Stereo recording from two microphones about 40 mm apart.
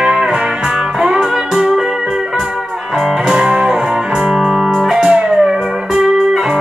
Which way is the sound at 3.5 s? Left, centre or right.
Right.